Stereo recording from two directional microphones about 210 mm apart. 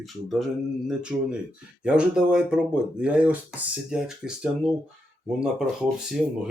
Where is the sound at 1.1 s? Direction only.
5° right (ahead or behind).